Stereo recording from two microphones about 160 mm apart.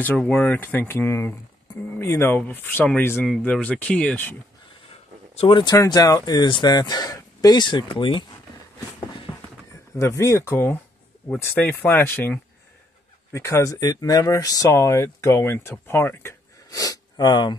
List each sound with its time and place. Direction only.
0.0 s speech: 10° left (ahead or behind)
5.4 s speech: 30° left (ahead or behind)
9.9 s speech: 15° left (ahead or behind)